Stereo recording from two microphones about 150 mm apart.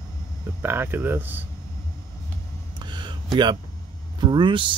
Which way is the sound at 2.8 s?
30° right (ahead or behind).